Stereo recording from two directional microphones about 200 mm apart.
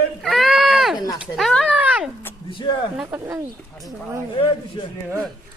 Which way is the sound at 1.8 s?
5° right (ahead or behind).